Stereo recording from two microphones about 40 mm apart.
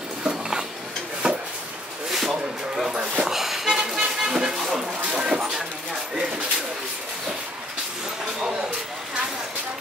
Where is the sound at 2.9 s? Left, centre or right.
Right.